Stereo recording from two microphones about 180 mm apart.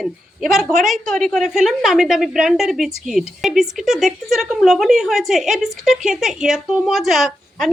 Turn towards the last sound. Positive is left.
turn(degrees=0)  # may be behind; listen again after turning